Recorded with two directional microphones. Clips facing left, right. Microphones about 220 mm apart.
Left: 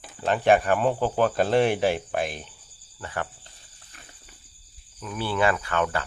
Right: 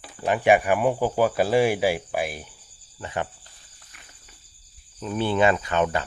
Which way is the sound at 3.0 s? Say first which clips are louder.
Right 3 dB; 20° right (ahead or behind).